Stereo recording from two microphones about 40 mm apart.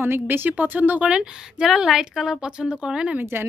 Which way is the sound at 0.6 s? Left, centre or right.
Right.